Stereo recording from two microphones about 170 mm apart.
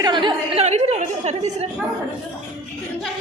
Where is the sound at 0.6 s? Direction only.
40° right (ahead or behind).